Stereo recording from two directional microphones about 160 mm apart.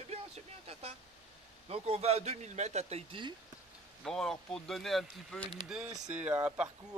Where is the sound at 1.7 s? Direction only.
40° right (ahead or behind).